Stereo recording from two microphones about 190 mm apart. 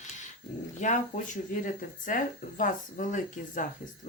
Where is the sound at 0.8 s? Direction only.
45° left (ahead or behind).